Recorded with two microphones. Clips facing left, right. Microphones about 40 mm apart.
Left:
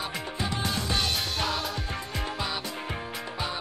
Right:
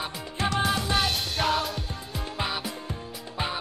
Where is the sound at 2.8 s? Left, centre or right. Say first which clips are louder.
Left 3 dB; left.